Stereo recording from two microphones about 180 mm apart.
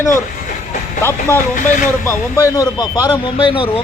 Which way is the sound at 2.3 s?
15° left (ahead or behind).